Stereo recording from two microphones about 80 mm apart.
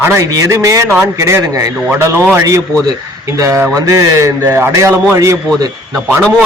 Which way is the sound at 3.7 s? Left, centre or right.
Right.